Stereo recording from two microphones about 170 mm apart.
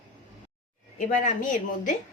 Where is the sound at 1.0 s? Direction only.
50° left (ahead or behind).